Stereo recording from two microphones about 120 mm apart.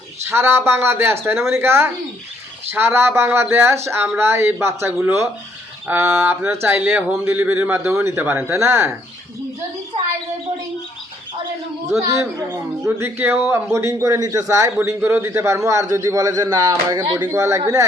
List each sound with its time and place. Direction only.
0.3 s a man's voice: 20° right (ahead or behind)
12.4 s a man's voice: 25° right (ahead or behind)
17.3 s a man's voice: 25° right (ahead or behind)